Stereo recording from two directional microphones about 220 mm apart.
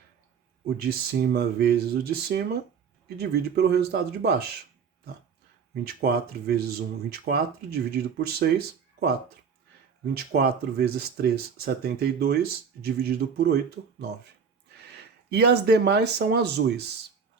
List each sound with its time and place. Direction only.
0.8 s speech: 45° right (ahead or behind)
5.8 s speech: 45° right (ahead or behind)
10.2 s speech: 45° right (ahead or behind)
14.7 s speech: 50° right (ahead or behind)